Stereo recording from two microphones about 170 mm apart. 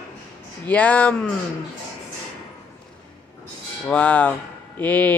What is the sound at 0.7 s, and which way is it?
Speech, 10° left (ahead or behind).